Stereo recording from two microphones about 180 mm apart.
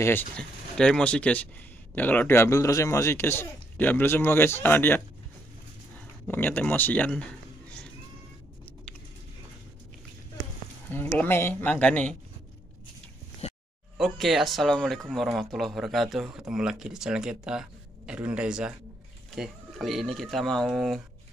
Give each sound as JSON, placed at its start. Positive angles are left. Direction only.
{"t": 0.0, "sound": "speech", "side_deg": 5}
{"t": 6.2, "sound": "speech", "side_deg": 10}
{"t": 10.9, "sound": "speech", "side_deg": 10}
{"t": 13.4, "sound": "a sound", "side_deg": 35}
{"t": 13.9, "sound": "speech", "side_deg": 0}